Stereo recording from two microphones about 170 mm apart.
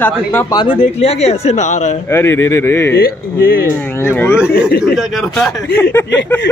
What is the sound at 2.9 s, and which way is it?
Speech, 65° left (ahead or behind).